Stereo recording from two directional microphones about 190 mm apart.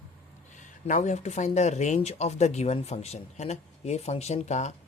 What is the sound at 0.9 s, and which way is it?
Speech, 40° left (ahead or behind).